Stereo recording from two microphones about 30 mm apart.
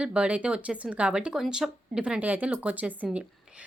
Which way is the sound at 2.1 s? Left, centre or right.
Right.